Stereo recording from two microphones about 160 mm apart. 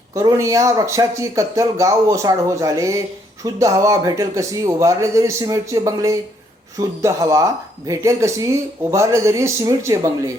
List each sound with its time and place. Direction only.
0.1 s speech: 20° right (ahead or behind)